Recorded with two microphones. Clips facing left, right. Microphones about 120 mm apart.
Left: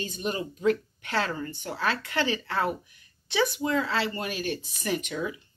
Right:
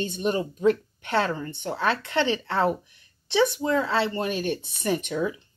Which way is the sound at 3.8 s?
25° right (ahead or behind).